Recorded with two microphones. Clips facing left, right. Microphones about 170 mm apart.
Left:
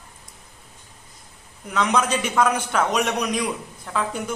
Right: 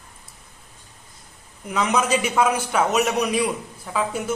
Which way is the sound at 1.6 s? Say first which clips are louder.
Even; 5° right (ahead or behind).